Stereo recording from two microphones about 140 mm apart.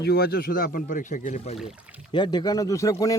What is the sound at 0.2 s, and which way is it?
Speech, 90° left.